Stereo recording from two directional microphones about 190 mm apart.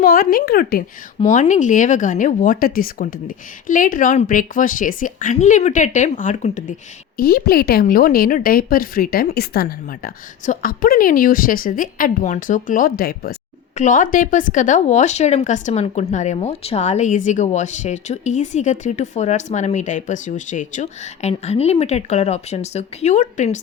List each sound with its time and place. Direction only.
0.0 s speech: 50° left (ahead or behind)
7.2 s speech: 55° left (ahead or behind)
13.7 s speech: 40° left (ahead or behind)